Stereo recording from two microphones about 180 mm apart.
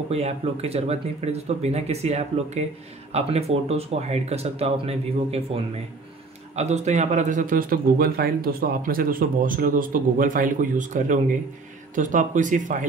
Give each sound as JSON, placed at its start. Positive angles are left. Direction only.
{"t": 0.1, "sound": "a man's voice", "side_deg": -35}